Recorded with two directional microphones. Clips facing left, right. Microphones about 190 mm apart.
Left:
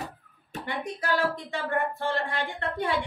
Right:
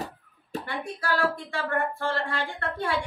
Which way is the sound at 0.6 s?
20° left (ahead or behind).